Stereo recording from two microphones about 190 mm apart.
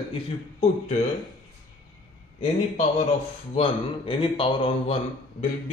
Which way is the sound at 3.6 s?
25° left (ahead or behind).